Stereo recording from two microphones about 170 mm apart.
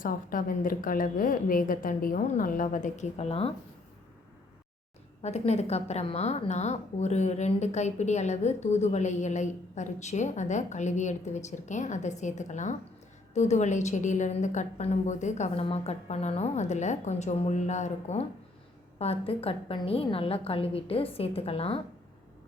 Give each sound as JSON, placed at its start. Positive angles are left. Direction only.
{"t": 0.0, "sound": "a woman's voice", "side_deg": 55}
{"t": 5.2, "sound": "a woman's voice", "side_deg": 40}